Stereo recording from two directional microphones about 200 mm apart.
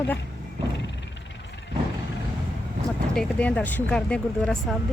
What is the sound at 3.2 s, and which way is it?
A woman's voice, 5° left (ahead or behind).